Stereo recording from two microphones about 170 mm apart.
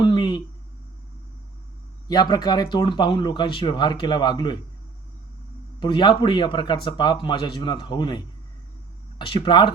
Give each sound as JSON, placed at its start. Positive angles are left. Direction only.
{"t": 0.0, "sound": "a sound", "side_deg": 30}
{"t": 2.0, "sound": "speech", "side_deg": 25}
{"t": 5.8, "sound": "speech", "side_deg": 25}